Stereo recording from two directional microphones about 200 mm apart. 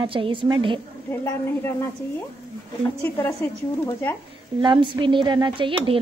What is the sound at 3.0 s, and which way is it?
A woman's voice, 10° left (ahead or behind).